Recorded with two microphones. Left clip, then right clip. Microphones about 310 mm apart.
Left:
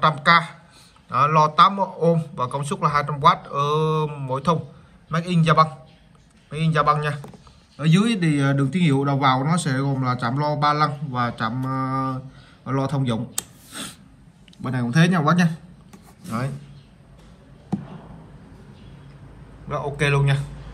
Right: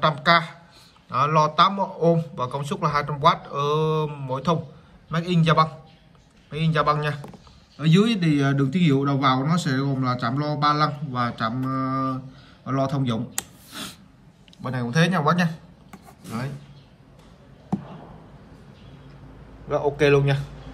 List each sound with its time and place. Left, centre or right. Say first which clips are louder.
0.0 s a man's voice: left 2 dB; centre
13.7 s a sound: left 1 dB; centre
14.6 s speech: left 1 dB; centre
19.7 s a man's voice: right 4 dB; centre